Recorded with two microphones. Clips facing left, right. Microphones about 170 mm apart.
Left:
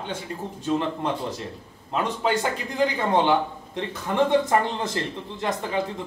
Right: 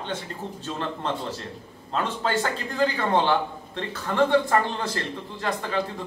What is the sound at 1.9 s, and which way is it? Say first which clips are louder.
A man's voice: left 2 dB; 15° left (ahead or behind).